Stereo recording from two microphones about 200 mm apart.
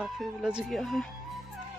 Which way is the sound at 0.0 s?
Centre (ahead or behind).